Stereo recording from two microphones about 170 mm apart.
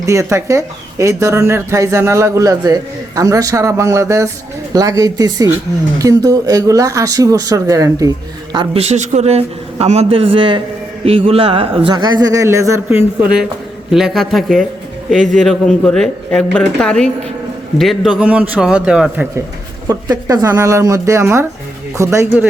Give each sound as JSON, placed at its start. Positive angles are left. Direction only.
{"t": 0.0, "sound": "speech", "side_deg": -15}
{"t": 8.5, "sound": "a man's voice", "side_deg": -35}
{"t": 13.9, "sound": "a man's voice", "side_deg": 0}
{"t": 19.9, "sound": "speech", "side_deg": -20}